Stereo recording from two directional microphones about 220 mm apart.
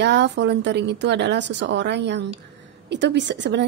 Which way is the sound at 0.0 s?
50° right (ahead or behind).